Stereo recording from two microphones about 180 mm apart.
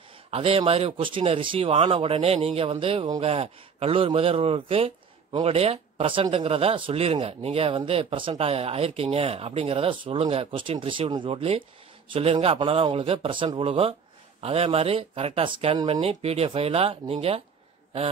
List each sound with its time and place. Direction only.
0.3 s speech: 30° right (ahead or behind)